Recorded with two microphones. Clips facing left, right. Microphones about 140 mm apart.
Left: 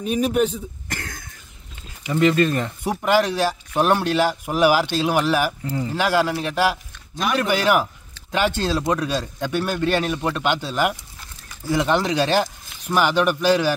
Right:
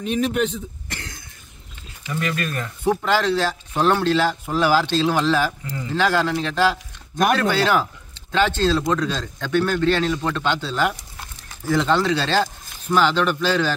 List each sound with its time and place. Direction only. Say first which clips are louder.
0.0 s speech: left 2 dB; 10° left (ahead or behind)
0.5 s throat clearing: left 1 dB; 50° left (ahead or behind)
2.0 s speech: left 8 dB; 25° left (ahead or behind)
2.8 s speech: right 1 dB; 15° left (ahead or behind)